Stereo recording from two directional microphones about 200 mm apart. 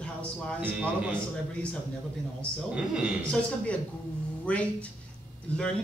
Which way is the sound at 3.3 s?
5° left (ahead or behind).